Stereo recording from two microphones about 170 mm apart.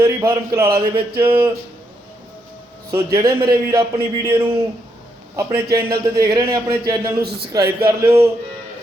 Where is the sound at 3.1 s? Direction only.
25° right (ahead or behind).